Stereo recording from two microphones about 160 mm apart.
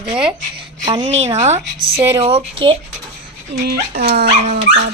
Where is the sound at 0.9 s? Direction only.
35° right (ahead or behind).